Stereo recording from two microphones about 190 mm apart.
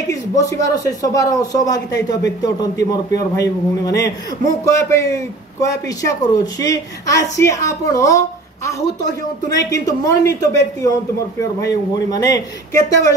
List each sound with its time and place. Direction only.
0.1 s a man's voice: 15° left (ahead or behind)